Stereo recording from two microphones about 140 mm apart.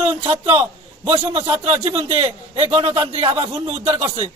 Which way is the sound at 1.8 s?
45° right (ahead or behind).